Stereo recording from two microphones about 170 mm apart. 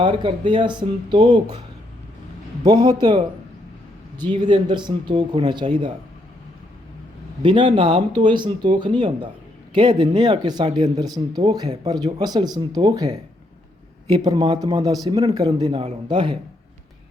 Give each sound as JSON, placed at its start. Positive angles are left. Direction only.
{"t": 0.0, "sound": "speech", "side_deg": -30}
{"t": 2.6, "sound": "speech", "side_deg": -25}
{"t": 4.4, "sound": "speech", "side_deg": -25}
{"t": 7.4, "sound": "speech", "side_deg": -30}